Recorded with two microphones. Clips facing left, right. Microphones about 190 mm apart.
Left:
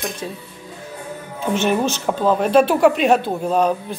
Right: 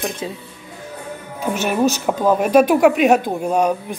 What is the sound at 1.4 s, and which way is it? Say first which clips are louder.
A woman's voice: right 1 dB; 10° right (ahead or behind).